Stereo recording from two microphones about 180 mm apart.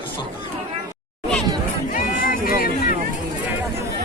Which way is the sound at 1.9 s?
50° left (ahead or behind).